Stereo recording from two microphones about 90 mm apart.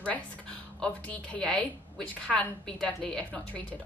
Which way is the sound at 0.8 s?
10° left (ahead or behind).